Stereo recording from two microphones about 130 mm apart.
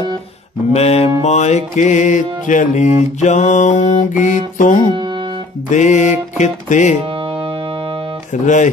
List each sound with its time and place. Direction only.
0.7 s mantra: 55° left (ahead or behind)
1.2 s music: 60° left (ahead or behind); by 4.8 s 90° left
4.9 s music: 35° right (ahead or behind)
5.7 s music: 70° left (ahead or behind)
7.2 s music: 45° right (ahead or behind)
8.3 s music: 70° left (ahead or behind)